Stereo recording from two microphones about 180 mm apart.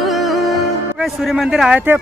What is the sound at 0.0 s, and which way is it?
Music, centre (ahead or behind).